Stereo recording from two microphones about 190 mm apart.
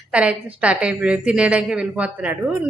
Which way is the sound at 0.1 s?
5° right (ahead or behind).